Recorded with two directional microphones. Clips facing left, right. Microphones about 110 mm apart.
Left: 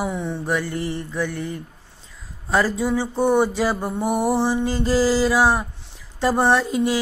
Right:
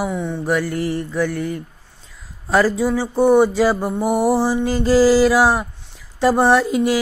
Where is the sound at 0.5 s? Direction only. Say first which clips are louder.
Right 4 dB; 20° left (ahead or behind).